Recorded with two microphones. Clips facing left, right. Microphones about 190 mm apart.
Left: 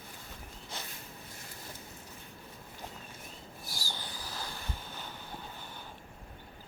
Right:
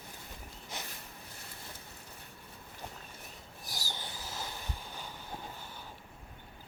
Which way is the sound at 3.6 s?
20° right (ahead or behind).